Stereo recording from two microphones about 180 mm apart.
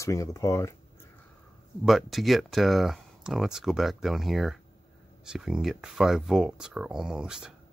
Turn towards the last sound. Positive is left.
turn(degrees=-5)  # may be behind; listen again after turning